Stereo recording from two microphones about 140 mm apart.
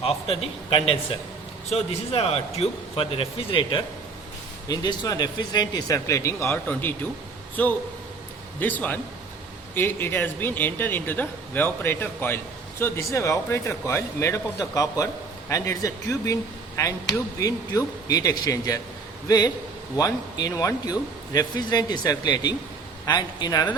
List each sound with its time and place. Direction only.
0.0 s speech: 40° left (ahead or behind); by 18.8 s 25° left (ahead or behind)
20.0 s speech: 25° left (ahead or behind)